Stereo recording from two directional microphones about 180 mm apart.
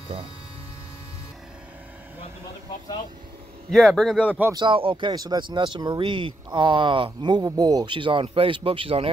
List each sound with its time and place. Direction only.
3.7 s speech: centre (ahead or behind)
4.6 s speech: 30° right (ahead or behind)